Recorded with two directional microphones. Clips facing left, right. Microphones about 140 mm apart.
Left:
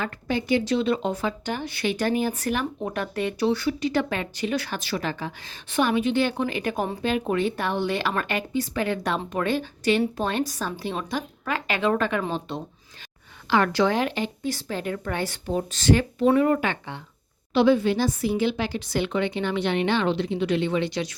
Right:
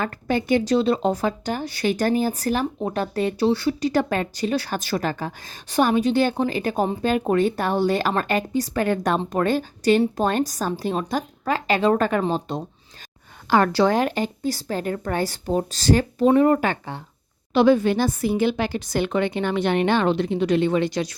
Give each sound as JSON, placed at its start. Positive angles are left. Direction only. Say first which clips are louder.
{"t": 0.0, "sound": "speech", "louder": "right 4 dB", "side_deg": -50}
{"t": 16.2, "sound": "speech", "louder": "right 4 dB", "side_deg": -25}
{"t": 16.5, "sound": "a woman's voice", "louder": "right 3 dB", "side_deg": -40}